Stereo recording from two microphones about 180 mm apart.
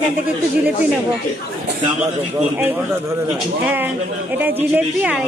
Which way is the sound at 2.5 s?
10° right (ahead or behind).